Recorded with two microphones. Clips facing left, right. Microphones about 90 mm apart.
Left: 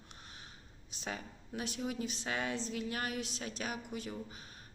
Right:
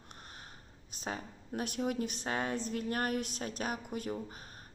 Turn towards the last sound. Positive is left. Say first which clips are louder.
# right 4 dB
turn(degrees=-45)  # may be behind; listen again after turning